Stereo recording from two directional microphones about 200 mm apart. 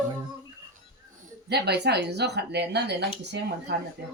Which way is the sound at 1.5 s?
55° right (ahead or behind).